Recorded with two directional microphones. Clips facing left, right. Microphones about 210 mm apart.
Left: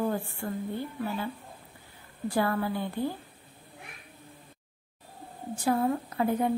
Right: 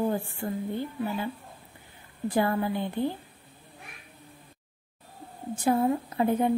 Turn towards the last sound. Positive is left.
turn(degrees=-20)  # may be behind; listen again after turning